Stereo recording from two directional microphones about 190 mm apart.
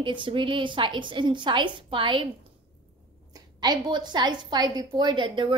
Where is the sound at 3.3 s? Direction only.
20° right (ahead or behind).